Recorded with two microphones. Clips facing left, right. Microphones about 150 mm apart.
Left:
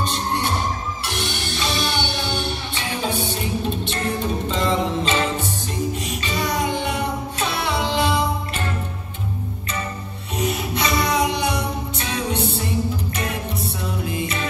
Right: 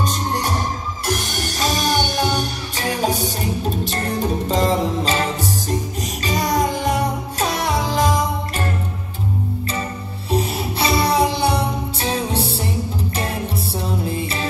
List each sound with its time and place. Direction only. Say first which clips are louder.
0.0 s music: right 1 dB; 40° right (ahead or behind)
10.3 s music: right 2 dB; 35° right (ahead or behind)
14.0 s music: right 1 dB; 35° right (ahead or behind)